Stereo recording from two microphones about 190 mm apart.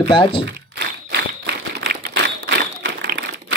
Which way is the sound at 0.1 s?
30° left (ahead or behind).